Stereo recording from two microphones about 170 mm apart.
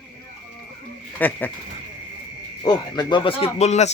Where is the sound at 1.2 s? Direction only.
10° left (ahead or behind).